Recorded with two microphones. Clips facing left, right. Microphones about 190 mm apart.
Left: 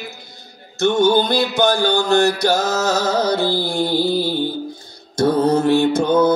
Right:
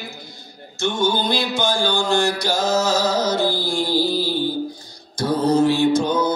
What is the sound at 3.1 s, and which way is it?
Mantra, 60° left (ahead or behind).